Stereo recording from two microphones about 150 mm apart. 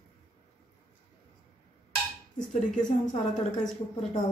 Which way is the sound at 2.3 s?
60° left (ahead or behind).